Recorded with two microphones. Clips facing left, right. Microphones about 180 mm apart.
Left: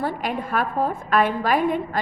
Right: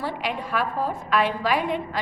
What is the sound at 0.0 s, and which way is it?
A woman's voice, 50° left (ahead or behind).